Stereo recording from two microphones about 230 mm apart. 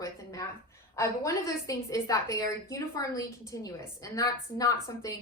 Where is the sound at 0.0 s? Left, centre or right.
Centre.